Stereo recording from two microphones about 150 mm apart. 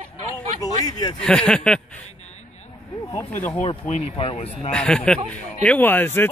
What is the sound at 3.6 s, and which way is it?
Speech, 45° left (ahead or behind).